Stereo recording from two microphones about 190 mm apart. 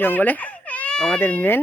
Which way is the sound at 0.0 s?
10° left (ahead or behind).